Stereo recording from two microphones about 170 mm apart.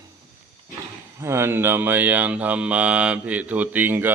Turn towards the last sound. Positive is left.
turn(degrees=-10)  # may be behind; listen again after turning